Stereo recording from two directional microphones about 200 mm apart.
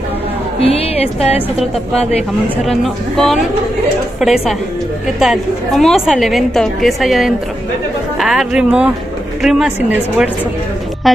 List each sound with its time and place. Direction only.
0.6 s speech: 30° left (ahead or behind)
2.5 s a woman's voice: centre (ahead or behind)